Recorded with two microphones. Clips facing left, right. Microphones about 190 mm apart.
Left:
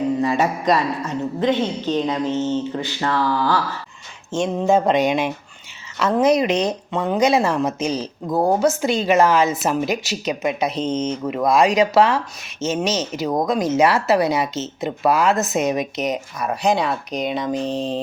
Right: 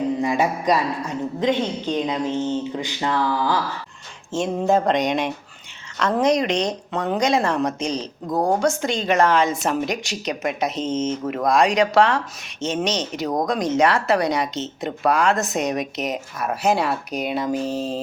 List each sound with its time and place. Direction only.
0.2 s a woman's voice: 10° right (ahead or behind)
4.3 s speech: centre (ahead or behind)